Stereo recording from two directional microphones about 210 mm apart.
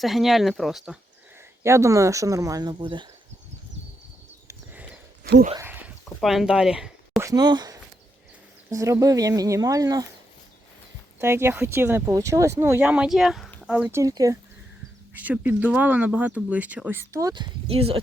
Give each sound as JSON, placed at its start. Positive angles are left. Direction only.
{"t": 0.0, "sound": "speech", "side_deg": 0}
{"t": 1.6, "sound": "speech", "side_deg": -15}
{"t": 4.4, "sound": "a sound", "side_deg": -10}
{"t": 6.1, "sound": "speech", "side_deg": 0}
{"t": 7.2, "sound": "speech", "side_deg": -15}
{"t": 11.2, "sound": "speech", "side_deg": -10}
{"t": 14.0, "sound": "speech", "side_deg": -15}